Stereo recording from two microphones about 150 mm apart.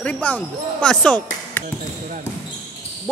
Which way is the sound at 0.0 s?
10° left (ahead or behind).